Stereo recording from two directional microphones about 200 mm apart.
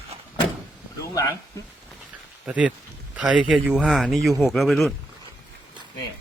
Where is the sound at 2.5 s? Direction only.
5° right (ahead or behind).